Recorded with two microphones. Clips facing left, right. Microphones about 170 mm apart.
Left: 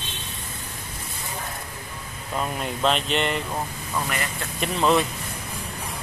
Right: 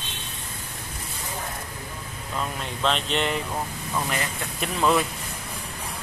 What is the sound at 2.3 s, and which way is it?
Speech, 15° left (ahead or behind).